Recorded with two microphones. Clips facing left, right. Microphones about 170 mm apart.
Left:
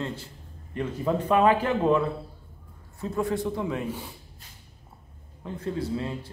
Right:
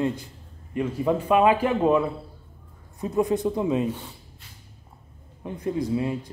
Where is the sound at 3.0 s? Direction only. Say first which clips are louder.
Right 4 dB; 20° right (ahead or behind).